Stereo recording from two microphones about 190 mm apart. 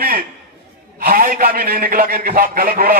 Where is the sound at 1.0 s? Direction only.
50° right (ahead or behind).